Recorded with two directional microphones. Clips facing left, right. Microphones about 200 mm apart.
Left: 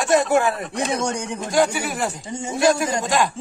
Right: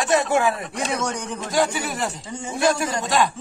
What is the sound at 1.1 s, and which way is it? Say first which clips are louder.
Speech: left 3 dB; 15° left (ahead or behind).